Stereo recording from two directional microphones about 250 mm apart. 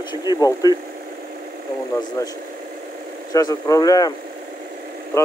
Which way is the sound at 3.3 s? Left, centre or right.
Centre.